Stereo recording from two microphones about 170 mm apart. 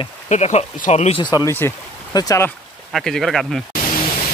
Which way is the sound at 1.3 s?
20° left (ahead or behind).